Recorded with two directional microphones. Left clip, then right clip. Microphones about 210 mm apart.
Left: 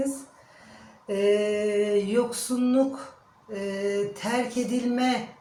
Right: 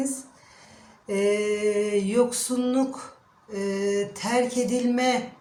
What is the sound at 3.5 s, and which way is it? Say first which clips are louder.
Speech: right 3 dB; 50° right (ahead or behind).